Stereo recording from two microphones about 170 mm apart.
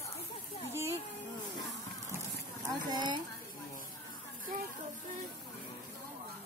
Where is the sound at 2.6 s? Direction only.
25° right (ahead or behind).